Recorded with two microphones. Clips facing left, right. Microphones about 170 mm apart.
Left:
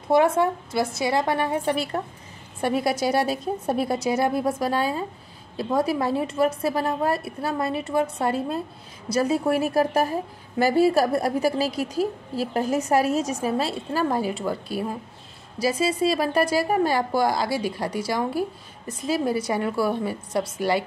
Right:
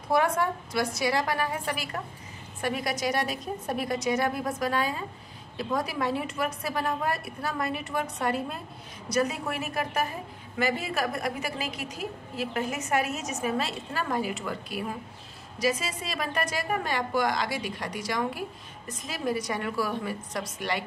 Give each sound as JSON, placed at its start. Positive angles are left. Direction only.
{"t": 0.1, "sound": "a woman's voice", "side_deg": 25}